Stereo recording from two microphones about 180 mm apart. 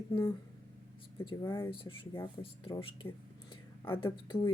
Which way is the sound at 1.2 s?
25° left (ahead or behind).